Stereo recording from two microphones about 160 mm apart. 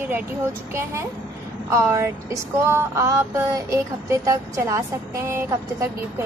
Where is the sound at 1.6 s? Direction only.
20° right (ahead or behind).